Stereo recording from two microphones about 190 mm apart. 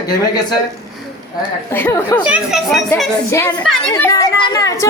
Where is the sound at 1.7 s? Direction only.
10° left (ahead or behind).